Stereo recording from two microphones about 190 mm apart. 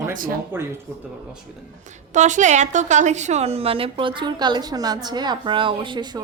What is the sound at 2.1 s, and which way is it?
A woman's voice, 40° right (ahead or behind).